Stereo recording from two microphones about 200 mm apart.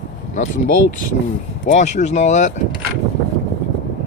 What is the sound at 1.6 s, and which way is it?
Speech, 35° left (ahead or behind).